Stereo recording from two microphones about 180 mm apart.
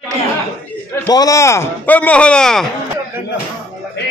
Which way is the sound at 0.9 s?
20° left (ahead or behind).